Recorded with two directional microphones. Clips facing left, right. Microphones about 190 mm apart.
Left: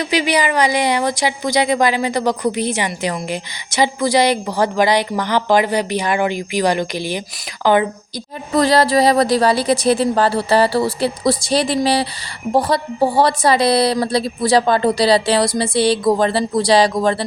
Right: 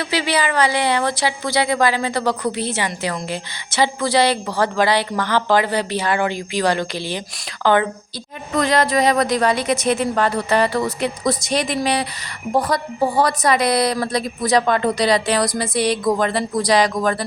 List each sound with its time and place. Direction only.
0.0 s speech: 15° left (ahead or behind)
8.5 s a woman's voice: 35° left (ahead or behind)